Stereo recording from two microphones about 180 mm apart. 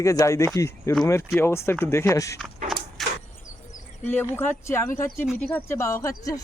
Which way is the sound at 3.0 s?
Centre (ahead or behind).